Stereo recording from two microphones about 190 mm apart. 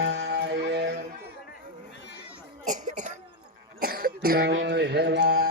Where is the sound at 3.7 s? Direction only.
50° right (ahead or behind).